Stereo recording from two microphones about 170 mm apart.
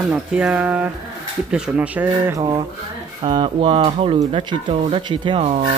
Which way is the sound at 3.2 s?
30° right (ahead or behind).